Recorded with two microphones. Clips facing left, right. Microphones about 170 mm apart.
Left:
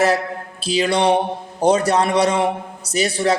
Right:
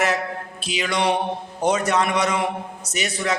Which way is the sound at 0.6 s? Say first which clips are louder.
Left 6 dB; 35° left (ahead or behind).